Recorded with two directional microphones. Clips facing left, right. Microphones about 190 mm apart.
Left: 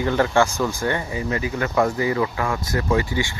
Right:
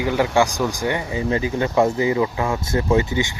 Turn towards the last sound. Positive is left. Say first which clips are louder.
# right 3 dB
turn(degrees=-20)  # may be behind; listen again after turning